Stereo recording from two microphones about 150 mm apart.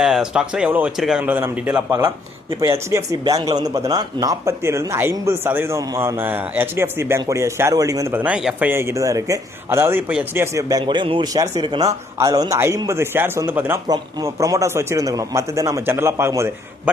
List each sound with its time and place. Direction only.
0.0 s speech: 5° right (ahead or behind)
1.2 s a man's voice: 10° right (ahead or behind)
13.8 s speech: 25° right (ahead or behind)